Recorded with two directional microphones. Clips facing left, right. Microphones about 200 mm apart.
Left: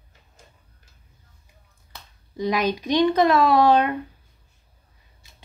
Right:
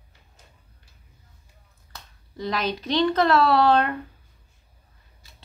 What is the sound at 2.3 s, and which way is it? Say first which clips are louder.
Speech: left 4 dB; 15° left (ahead or behind).